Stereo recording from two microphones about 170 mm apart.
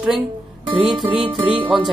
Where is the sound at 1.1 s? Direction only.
30° right (ahead or behind).